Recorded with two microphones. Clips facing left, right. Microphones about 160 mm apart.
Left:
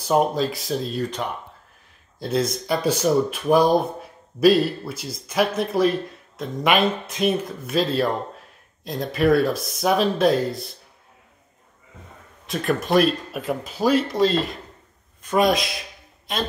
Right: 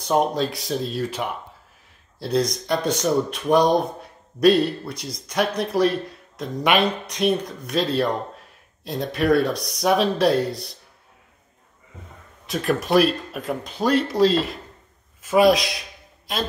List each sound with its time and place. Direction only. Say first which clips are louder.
0.0 s speech: left 1 dB; 5° left (ahead or behind)
12.4 s speech: even; centre (ahead or behind)